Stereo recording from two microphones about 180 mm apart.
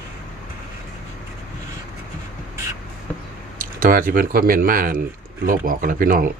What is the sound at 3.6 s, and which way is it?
Speech, 50° right (ahead or behind).